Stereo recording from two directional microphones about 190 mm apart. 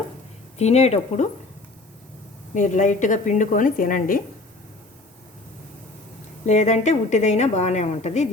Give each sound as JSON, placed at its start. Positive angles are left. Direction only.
{"t": 0.6, "sound": "a woman's voice", "side_deg": 35}
{"t": 2.6, "sound": "speech", "side_deg": 40}
{"t": 6.4, "sound": "a woman's voice", "side_deg": 35}